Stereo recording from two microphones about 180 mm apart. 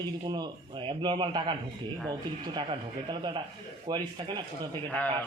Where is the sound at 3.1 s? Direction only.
25° right (ahead or behind).